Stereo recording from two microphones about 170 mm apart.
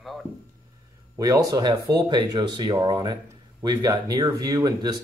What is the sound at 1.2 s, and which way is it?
Speech, 20° right (ahead or behind).